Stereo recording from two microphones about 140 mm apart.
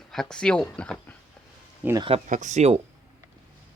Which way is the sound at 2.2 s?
65° right (ahead or behind).